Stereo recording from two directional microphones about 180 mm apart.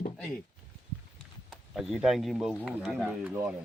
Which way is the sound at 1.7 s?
Centre (ahead or behind).